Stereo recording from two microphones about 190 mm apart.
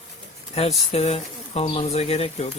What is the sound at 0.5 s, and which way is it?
Speech, 30° left (ahead or behind).